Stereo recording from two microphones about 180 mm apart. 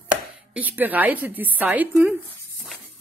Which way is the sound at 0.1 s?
10° right (ahead or behind).